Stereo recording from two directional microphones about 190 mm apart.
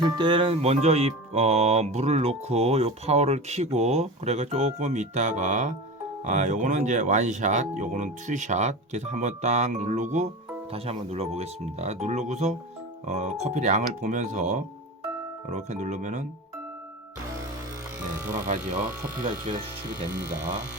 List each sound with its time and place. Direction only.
0.2 s speech: 25° right (ahead or behind)
18.3 s speech: 45° right (ahead or behind)